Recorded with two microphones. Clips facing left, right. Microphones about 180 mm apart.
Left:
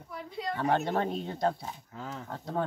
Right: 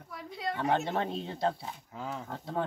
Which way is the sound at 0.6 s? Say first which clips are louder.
Left 2 dB; centre (ahead or behind).